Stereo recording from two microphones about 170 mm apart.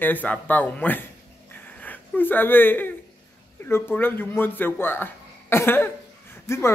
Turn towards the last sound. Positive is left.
turn(degrees=15)  # may be behind; listen again after turning